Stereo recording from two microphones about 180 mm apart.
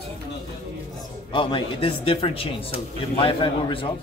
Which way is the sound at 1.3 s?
25° left (ahead or behind).